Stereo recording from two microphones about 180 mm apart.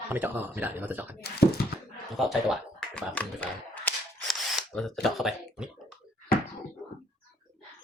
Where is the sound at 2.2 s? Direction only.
Centre (ahead or behind).